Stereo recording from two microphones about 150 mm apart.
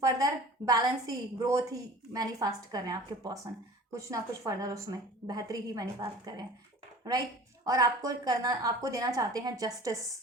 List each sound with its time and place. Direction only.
0.0 s a woman's voice: 25° right (ahead or behind)
7.6 s a woman's voice: 25° right (ahead or behind)